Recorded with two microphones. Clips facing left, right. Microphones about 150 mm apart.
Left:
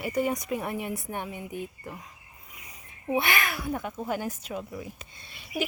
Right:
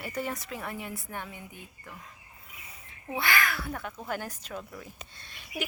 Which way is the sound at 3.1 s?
20° left (ahead or behind).